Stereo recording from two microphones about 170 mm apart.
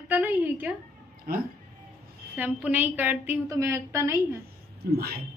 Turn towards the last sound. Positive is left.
turn(degrees=-65)  # may be behind; listen again after turning